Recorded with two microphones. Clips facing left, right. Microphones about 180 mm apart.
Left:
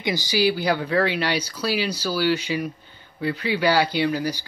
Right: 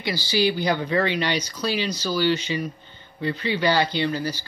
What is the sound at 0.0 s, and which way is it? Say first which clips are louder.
Speech: left 2 dB; 20° left (ahead or behind).